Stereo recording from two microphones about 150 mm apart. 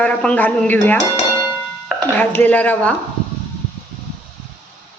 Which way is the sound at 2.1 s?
10° left (ahead or behind).